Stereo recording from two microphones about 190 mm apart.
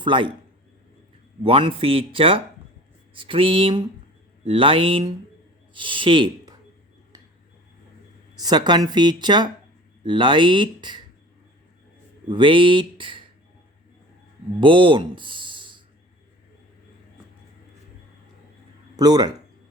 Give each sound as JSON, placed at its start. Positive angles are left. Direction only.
{"t": 0.0, "sound": "a man's voice", "side_deg": -25}
{"t": 1.5, "sound": "speech", "side_deg": -30}
{"t": 8.4, "sound": "speech", "side_deg": -20}
{"t": 12.3, "sound": "speech", "side_deg": -25}
{"t": 14.6, "sound": "speech", "side_deg": -25}
{"t": 18.9, "sound": "speech", "side_deg": -20}